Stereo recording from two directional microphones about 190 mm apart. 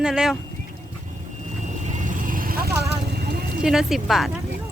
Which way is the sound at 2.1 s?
45° right (ahead or behind).